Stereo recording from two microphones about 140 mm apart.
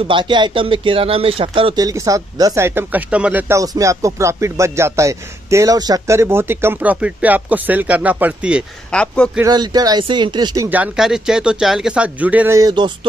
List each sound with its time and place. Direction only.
0.1 s speech: 35° right (ahead or behind)
1.8 s speech: 25° right (ahead or behind)
3.5 s speech: 25° right (ahead or behind)
8.9 s a man's voice: 5° left (ahead or behind)
9.4 s speech: 30° right (ahead or behind)
10.7 s speech: 5° right (ahead or behind)
12.5 s speech: 30° right (ahead or behind)